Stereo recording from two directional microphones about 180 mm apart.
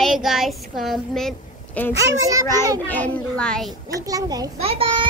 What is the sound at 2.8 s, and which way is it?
Speech, 10° left (ahead or behind).